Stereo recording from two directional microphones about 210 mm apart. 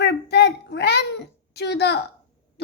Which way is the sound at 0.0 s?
50° left (ahead or behind).